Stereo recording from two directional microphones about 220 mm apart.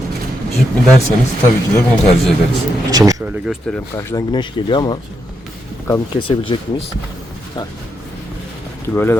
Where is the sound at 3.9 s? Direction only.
15° left (ahead or behind).